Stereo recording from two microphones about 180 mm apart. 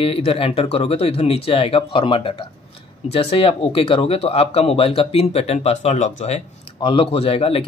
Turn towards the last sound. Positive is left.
turn(degrees=30)  # may be behind; listen again after turning